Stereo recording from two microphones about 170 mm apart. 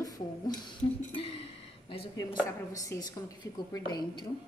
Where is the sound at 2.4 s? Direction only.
20° left (ahead or behind).